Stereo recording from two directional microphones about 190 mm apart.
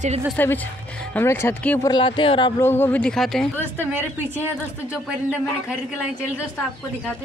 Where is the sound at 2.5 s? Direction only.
10° left (ahead or behind).